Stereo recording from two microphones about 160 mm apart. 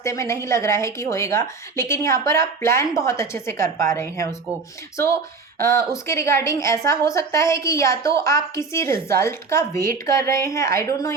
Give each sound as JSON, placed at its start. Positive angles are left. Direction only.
{"t": 0.0, "sound": "a woman's voice", "side_deg": 20}
{"t": 5.5, "sound": "a woman's voice", "side_deg": 20}